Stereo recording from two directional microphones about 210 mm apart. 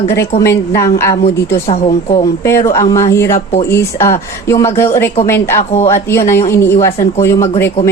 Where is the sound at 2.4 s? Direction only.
15° left (ahead or behind).